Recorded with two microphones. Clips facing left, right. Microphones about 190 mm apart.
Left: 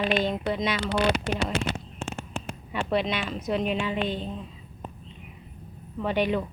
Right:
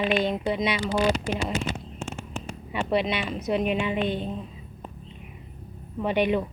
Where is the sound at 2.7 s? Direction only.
10° right (ahead or behind).